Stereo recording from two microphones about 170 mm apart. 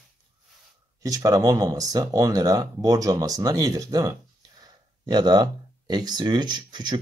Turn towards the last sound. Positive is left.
turn(degrees=-25)  # may be behind; listen again after turning